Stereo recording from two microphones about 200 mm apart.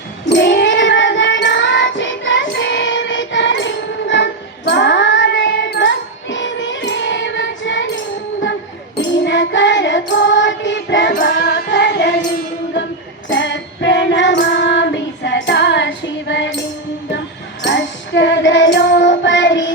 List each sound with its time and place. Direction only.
0.3 s cat: 60° left (ahead or behind)
4.1 s child singing: 60° left (ahead or behind)
9.2 s child singing: 65° left (ahead or behind)
13.3 s child singing: 60° left (ahead or behind)
17.6 s music: 65° left (ahead or behind)